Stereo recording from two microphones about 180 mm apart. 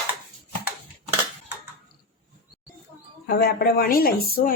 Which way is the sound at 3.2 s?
60° left (ahead or behind).